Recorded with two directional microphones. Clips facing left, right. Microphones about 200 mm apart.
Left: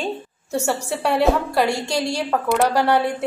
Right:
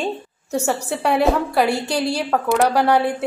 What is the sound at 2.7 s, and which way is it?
Speech, 10° right (ahead or behind).